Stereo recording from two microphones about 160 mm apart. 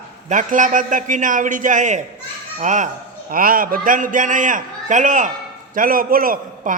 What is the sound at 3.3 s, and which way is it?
A man's voice, 65° right (ahead or behind).